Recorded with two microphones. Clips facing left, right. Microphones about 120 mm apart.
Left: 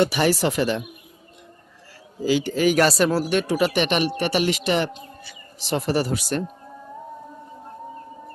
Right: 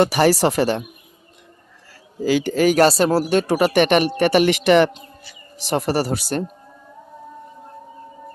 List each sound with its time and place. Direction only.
0.0 s speech: 40° right (ahead or behind)
2.2 s a man's voice: 50° right (ahead or behind)
2.8 s speech: 30° right (ahead or behind)
3.6 s a man's voice: 50° right (ahead or behind)
5.6 s speech: 50° right (ahead or behind); by 6.4 s 35° right (ahead or behind)